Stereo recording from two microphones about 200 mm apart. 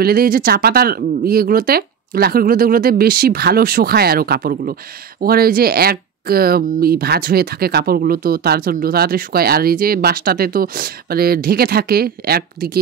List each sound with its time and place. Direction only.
0.0 s speech: 50° right (ahead or behind)